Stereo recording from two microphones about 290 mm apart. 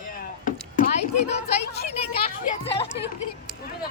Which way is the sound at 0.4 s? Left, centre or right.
Left.